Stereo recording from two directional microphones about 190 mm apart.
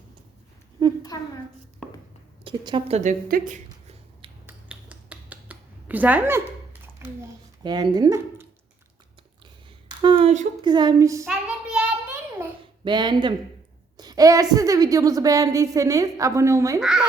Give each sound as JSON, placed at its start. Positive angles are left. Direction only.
{"t": 1.8, "sound": "a sound", "side_deg": 5}
{"t": 2.4, "sound": "speech", "side_deg": -25}
{"t": 4.4, "sound": "finger snapping", "side_deg": -5}
{"t": 7.6, "sound": "speech", "side_deg": -20}
{"t": 10.0, "sound": "speech", "side_deg": -25}
{"t": 10.6, "sound": "speech", "side_deg": -20}
{"t": 11.3, "sound": "child singing", "side_deg": -5}
{"t": 12.8, "sound": "a woman's voice", "side_deg": -25}
{"t": 16.8, "sound": "speech", "side_deg": -5}